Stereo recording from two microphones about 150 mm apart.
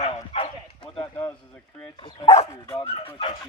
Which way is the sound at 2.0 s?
30° left (ahead or behind).